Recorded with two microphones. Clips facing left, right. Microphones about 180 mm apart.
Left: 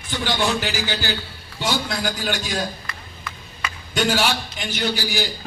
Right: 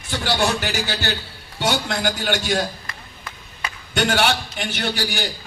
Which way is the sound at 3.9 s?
65° right (ahead or behind).